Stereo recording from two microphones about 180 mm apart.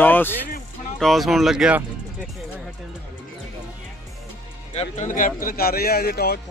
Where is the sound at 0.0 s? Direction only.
10° left (ahead or behind).